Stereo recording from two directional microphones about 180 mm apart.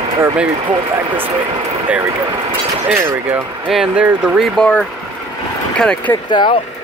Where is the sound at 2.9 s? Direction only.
15° right (ahead or behind); by 6.1 s 5° left (ahead or behind).